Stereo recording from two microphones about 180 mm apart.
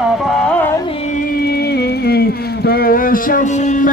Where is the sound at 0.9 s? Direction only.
45° left (ahead or behind).